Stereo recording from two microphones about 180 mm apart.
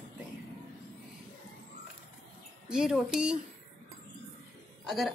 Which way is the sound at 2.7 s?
5° right (ahead or behind).